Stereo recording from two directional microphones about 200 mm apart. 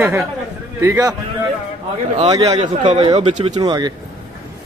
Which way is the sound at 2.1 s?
25° right (ahead or behind).